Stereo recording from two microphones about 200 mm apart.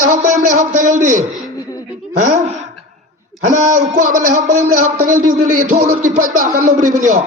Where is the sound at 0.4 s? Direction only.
40° right (ahead or behind).